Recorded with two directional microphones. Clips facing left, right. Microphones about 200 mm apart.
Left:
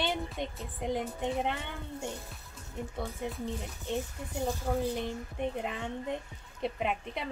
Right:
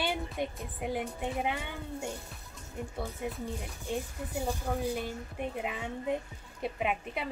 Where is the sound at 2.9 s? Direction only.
Centre (ahead or behind).